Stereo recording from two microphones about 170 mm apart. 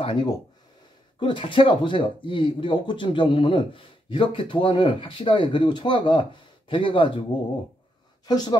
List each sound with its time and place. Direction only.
0.0 s speech: 25° left (ahead or behind)
8.3 s speech: 25° left (ahead or behind)